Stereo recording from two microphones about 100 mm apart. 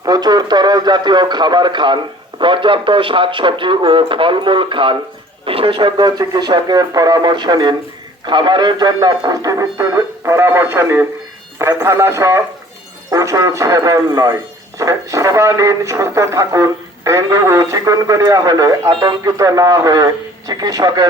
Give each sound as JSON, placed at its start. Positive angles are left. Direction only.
{"t": 0.0, "sound": "a man's voice", "side_deg": -40}
{"t": 5.5, "sound": "speech", "side_deg": -70}